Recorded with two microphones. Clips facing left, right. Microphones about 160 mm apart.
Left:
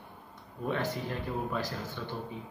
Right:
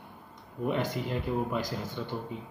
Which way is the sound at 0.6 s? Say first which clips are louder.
Right 2 dB; 15° right (ahead or behind).